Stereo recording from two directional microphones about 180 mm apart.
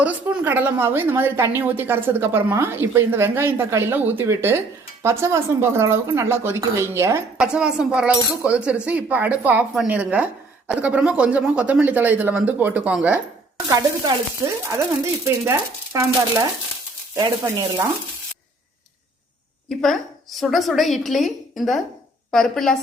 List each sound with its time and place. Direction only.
0.0 s a woman's voice: 10° right (ahead or behind)
7.3 s a woman's voice: 5° right (ahead or behind); by 17.8 s 20° right (ahead or behind)
19.8 s a woman's voice: centre (ahead or behind)